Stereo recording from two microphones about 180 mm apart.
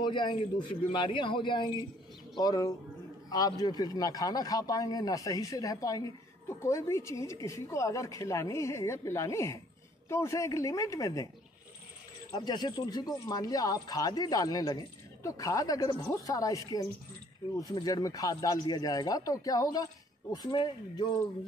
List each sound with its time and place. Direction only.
0.0 s speech: 25° left (ahead or behind)
12.3 s speech: 25° left (ahead or behind)